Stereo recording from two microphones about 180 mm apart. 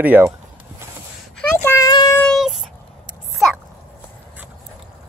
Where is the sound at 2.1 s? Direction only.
Centre (ahead or behind).